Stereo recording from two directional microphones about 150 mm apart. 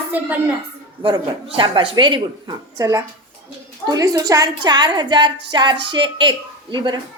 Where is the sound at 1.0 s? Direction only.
35° right (ahead or behind).